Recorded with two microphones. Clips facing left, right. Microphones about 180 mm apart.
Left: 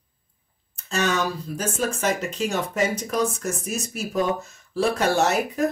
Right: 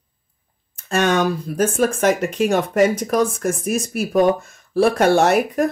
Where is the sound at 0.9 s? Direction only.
55° right (ahead or behind).